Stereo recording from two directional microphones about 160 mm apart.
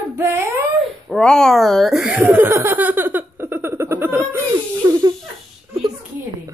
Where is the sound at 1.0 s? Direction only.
5° left (ahead or behind); by 5.1 s 15° right (ahead or behind).